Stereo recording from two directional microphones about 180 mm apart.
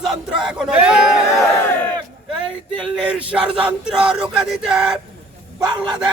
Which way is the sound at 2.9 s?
5° right (ahead or behind).